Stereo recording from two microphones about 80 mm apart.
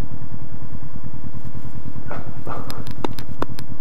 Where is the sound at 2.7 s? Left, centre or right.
Centre.